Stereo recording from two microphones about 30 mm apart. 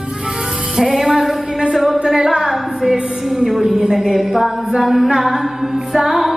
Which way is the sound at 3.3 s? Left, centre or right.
Centre.